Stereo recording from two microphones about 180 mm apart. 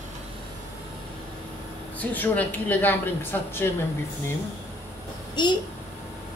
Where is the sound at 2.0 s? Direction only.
10° left (ahead or behind).